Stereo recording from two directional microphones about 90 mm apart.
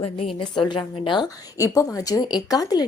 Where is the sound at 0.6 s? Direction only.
65° left (ahead or behind).